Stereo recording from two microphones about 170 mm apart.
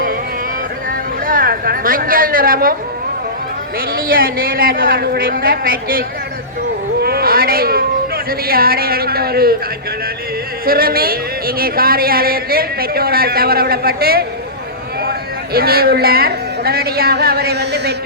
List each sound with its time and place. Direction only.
1.3 s a woman's voice: 60° right (ahead or behind)
3.9 s speech: 60° right (ahead or behind)
7.0 s music: 65° right (ahead or behind)
10.7 s speech: 60° right (ahead or behind)
15.5 s speech: 65° right (ahead or behind)